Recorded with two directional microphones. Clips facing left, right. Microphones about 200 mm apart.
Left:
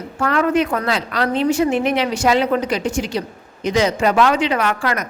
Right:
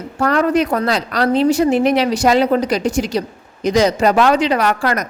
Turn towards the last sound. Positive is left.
turn(degrees=-40)  # may be behind; listen again after turning